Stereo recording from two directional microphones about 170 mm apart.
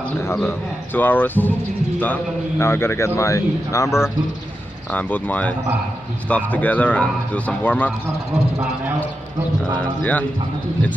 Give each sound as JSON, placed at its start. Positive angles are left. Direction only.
{"t": 0.3, "sound": "speech", "side_deg": 10}
{"t": 2.6, "sound": "speech", "side_deg": 15}
{"t": 9.8, "sound": "speech", "side_deg": 10}